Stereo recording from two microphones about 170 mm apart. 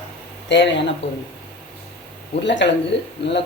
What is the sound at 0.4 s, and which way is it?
Speech, 90° left.